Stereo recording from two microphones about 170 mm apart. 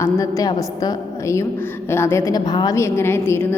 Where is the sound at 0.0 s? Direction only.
20° left (ahead or behind).